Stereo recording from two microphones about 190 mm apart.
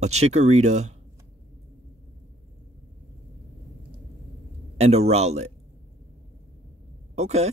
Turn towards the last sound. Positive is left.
turn(degrees=-35)  # may be behind; listen again after turning